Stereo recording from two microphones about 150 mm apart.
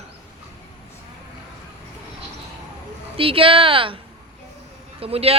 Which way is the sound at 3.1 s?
35° right (ahead or behind).